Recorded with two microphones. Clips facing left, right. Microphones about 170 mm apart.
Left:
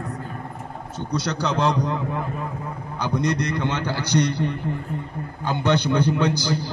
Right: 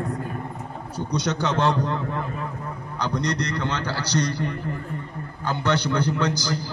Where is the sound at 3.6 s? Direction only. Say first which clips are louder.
Left 2 dB; 20° left (ahead or behind).